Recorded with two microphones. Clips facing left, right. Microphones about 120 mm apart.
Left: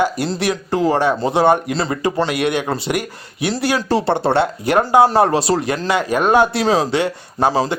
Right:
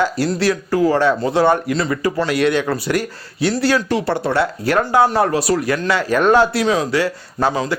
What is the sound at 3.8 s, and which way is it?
Speech, 30° left (ahead or behind).